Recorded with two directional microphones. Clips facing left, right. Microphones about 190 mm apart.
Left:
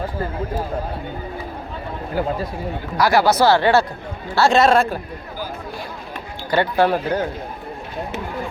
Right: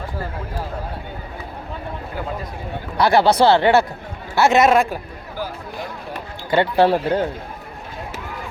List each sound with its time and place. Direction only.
3.1 s a man's voice: 30° right (ahead or behind)
6.5 s speech: 25° right (ahead or behind)